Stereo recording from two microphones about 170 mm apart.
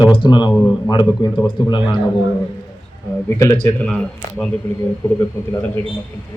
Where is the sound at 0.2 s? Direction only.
25° left (ahead or behind).